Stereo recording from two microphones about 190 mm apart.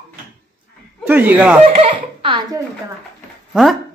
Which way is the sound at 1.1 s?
10° right (ahead or behind).